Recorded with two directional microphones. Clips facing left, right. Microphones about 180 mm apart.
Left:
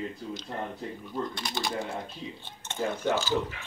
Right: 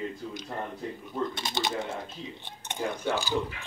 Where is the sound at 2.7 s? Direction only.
15° right (ahead or behind).